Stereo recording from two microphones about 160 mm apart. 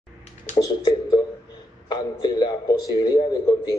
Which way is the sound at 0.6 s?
25° left (ahead or behind).